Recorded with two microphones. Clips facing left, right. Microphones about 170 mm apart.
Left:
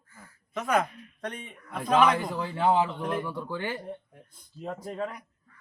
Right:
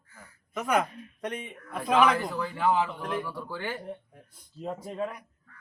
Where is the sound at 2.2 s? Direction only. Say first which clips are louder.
Left 1 dB; 20° left (ahead or behind).